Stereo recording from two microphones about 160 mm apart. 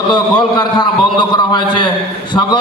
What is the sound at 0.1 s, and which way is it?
A man's voice, 25° left (ahead or behind).